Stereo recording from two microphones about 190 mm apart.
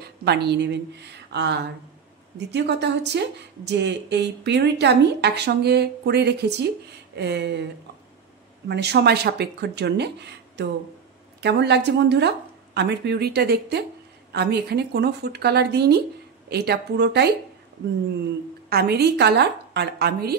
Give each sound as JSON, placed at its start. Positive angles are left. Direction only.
{"t": 0.0, "sound": "speech", "side_deg": -60}
{"t": 8.6, "sound": "speech", "side_deg": -60}
{"t": 18.7, "sound": "speech", "side_deg": -55}